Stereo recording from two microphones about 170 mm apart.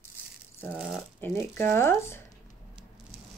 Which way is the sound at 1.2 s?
15° left (ahead or behind).